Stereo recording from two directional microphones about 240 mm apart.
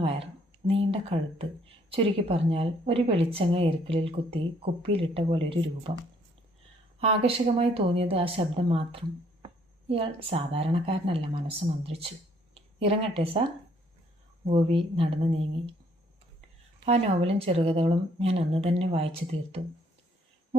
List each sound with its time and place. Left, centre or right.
0.0 s speech: right
7.0 s speech: right
12.5 s speech: right
14.4 s speech: right
16.8 s speech: right